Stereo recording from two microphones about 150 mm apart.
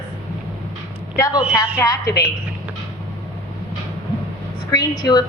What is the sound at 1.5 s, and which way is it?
Speech, 20° left (ahead or behind).